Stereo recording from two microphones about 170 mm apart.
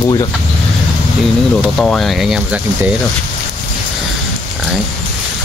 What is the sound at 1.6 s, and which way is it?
Speech, centre (ahead or behind).